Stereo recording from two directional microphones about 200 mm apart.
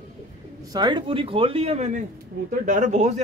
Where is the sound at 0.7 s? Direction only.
20° right (ahead or behind).